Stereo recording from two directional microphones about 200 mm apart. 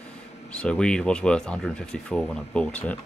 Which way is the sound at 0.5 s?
5° left (ahead or behind).